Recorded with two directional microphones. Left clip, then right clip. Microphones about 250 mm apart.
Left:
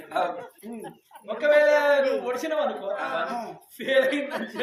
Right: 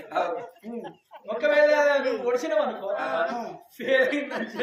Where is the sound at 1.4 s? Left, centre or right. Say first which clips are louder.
Left 1 dB; centre.